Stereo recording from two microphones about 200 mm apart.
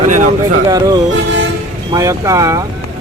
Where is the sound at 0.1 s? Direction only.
40° right (ahead or behind).